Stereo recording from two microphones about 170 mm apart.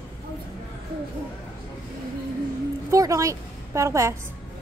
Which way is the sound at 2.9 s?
20° right (ahead or behind).